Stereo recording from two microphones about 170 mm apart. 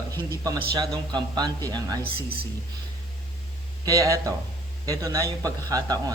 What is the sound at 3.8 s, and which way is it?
Speech, 20° right (ahead or behind).